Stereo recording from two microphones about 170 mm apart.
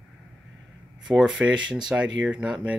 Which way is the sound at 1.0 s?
5° right (ahead or behind).